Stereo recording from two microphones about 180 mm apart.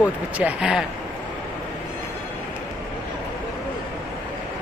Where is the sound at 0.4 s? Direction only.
5° right (ahead or behind).